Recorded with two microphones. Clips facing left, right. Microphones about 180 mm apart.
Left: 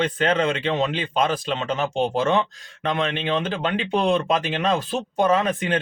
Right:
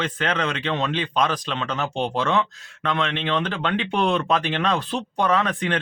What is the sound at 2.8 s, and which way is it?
Speech, 15° left (ahead or behind).